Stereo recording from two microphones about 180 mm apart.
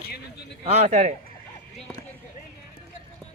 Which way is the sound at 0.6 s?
40° right (ahead or behind).